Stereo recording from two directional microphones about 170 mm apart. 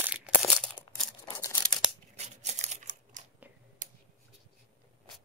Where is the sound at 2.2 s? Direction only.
40° right (ahead or behind).